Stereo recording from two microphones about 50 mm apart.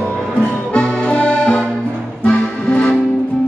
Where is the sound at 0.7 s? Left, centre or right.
Left.